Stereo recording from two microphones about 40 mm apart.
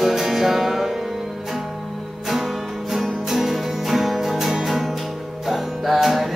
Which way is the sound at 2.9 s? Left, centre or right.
Centre.